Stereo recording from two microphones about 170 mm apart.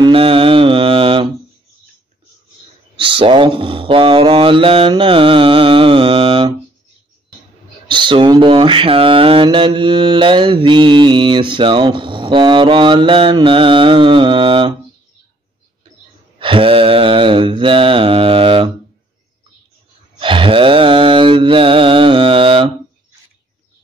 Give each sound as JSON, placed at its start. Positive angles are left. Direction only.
{"t": 0.0, "sound": "mantra", "side_deg": -30}
{"t": 3.0, "sound": "speech", "side_deg": -30}
{"t": 7.9, "sound": "mantra", "side_deg": -30}
{"t": 16.3, "sound": "mantra", "side_deg": -30}
{"t": 20.2, "sound": "mantra", "side_deg": -30}